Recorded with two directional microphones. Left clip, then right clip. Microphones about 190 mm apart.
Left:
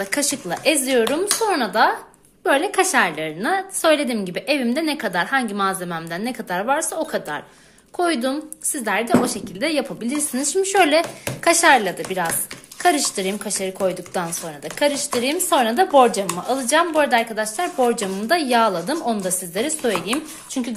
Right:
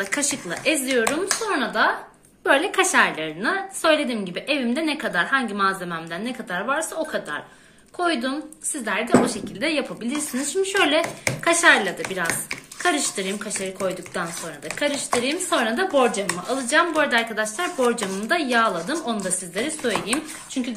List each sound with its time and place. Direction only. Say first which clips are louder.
0.0 s speech: left 2 dB; 35° left (ahead or behind)
2.4 s a woman's voice: left 1 dB; 30° left (ahead or behind); by 8.4 s 50° left (ahead or behind)
9.6 s a woman's voice: left 2 dB; 40° left (ahead or behind)
15.2 s a woman's voice: left 8 dB; 40° left (ahead or behind)